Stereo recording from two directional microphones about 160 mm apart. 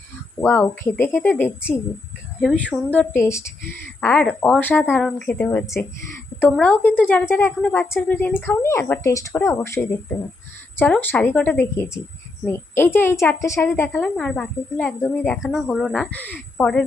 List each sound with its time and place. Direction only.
0.3 s a woman's voice: 10° left (ahead or behind)
4.0 s a woman's voice: 5° left (ahead or behind)
14.0 s a woman's voice: 5° left (ahead or behind)